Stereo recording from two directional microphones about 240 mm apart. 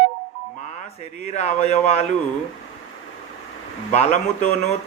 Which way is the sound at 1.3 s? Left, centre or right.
Left.